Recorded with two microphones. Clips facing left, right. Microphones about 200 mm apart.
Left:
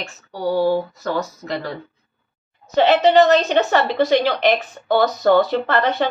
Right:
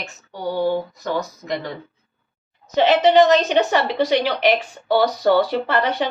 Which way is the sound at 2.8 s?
10° right (ahead or behind).